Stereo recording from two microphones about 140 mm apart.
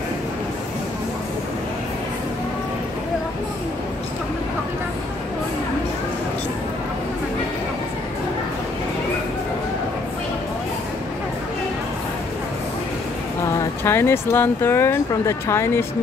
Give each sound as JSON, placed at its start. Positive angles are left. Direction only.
{"t": 13.4, "sound": "speech", "side_deg": 20}